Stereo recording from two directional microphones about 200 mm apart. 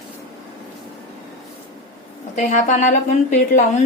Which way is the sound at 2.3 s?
35° left (ahead or behind).